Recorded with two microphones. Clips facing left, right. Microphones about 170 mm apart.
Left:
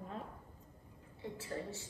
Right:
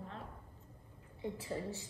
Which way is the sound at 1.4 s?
15° right (ahead or behind).